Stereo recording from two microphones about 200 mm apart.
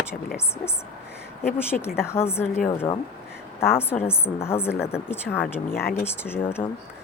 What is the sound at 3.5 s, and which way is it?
A woman's voice, 10° left (ahead or behind).